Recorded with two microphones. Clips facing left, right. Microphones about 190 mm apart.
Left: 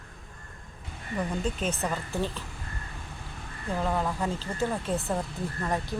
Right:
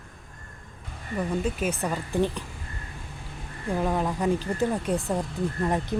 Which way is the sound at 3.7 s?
15° right (ahead or behind).